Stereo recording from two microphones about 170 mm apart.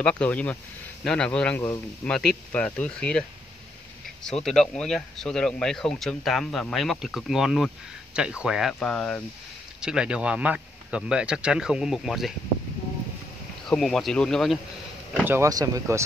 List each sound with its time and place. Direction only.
0.0 s speech: 10° left (ahead or behind)
13.7 s speech: centre (ahead or behind)
15.2 s speech: 15° right (ahead or behind)